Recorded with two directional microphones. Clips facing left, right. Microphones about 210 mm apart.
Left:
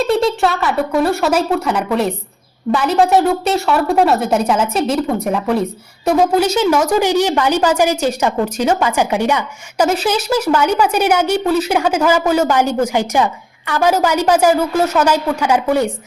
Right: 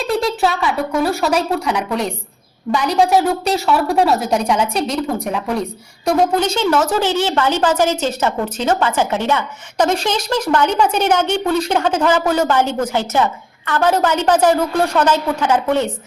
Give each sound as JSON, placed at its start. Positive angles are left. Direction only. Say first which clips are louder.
{"t": 0.0, "sound": "a woman's voice", "louder": "left 3 dB", "side_deg": 0}